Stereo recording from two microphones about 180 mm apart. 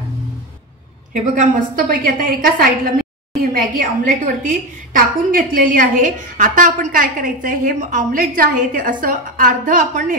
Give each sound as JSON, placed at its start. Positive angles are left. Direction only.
{"t": 1.3, "sound": "a woman's voice", "side_deg": -50}